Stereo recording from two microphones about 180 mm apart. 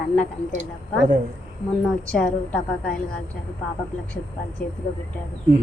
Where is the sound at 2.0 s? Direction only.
10° left (ahead or behind).